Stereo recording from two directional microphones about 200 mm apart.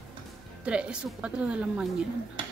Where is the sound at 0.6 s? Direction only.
5° right (ahead or behind).